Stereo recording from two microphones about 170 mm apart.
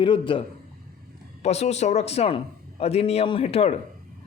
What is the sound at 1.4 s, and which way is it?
A man's voice, 40° left (ahead or behind).